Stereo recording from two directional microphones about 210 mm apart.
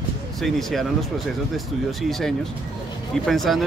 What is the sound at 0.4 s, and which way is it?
Speech, centre (ahead or behind).